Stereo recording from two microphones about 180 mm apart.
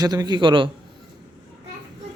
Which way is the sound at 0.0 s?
20° right (ahead or behind).